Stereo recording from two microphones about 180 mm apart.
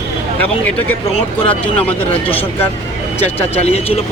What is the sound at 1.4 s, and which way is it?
Speech, 10° left (ahead or behind).